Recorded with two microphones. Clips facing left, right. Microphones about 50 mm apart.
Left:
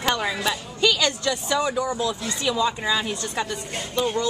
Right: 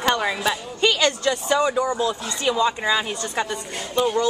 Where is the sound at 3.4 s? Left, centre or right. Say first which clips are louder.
Right 3 dB; right.